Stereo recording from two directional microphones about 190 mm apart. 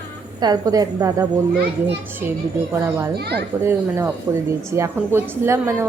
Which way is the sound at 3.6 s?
15° right (ahead or behind).